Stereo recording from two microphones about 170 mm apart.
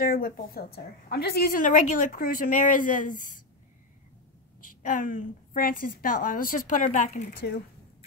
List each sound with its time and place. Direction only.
0.0 s a woman's voice: 55° left (ahead or behind)
4.8 s a woman's voice: 50° left (ahead or behind)